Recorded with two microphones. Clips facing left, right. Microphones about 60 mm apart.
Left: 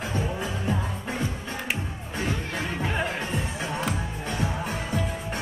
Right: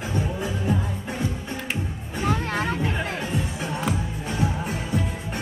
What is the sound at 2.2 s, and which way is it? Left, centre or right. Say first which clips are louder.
Music: right 6 dB; right.